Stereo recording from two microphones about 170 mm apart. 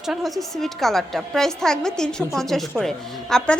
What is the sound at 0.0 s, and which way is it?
A woman's voice, centre (ahead or behind).